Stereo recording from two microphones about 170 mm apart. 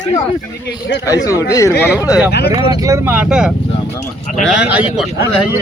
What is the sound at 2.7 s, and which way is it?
A man's voice, 20° right (ahead or behind).